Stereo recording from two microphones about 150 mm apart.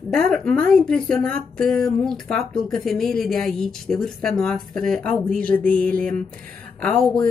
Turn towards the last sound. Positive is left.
turn(degrees=5)  # may be behind; listen again after turning